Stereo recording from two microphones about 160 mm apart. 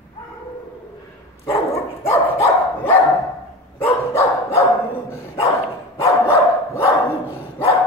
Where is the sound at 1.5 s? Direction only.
20° left (ahead or behind).